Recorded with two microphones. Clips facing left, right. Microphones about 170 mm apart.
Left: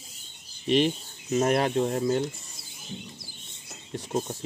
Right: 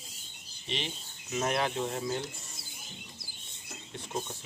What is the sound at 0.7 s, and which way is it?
Speech, 50° left (ahead or behind).